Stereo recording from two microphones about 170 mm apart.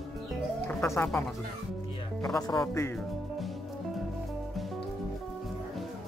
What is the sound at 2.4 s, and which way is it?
Speech, 20° left (ahead or behind).